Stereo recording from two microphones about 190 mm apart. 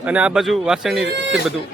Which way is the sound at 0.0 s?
5° right (ahead or behind).